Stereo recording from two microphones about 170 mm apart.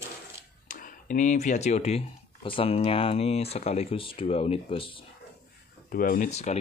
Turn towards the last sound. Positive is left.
turn(degrees=40)  # may be behind; listen again after turning